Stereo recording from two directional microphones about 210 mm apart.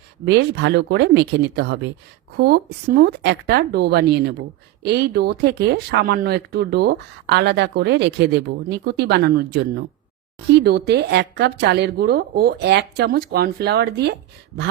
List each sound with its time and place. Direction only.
0.3 s speech: 55° right (ahead or behind)